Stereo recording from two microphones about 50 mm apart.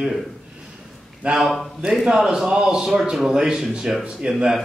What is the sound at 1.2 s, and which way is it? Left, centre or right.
Speech, right.